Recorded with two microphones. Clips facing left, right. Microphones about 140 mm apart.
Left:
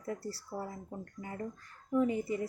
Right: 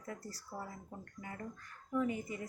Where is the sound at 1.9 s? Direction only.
30° left (ahead or behind).